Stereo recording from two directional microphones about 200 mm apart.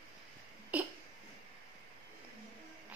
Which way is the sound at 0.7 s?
5° right (ahead or behind).